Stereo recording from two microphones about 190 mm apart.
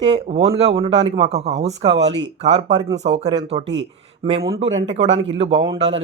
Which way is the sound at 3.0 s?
35° right (ahead or behind).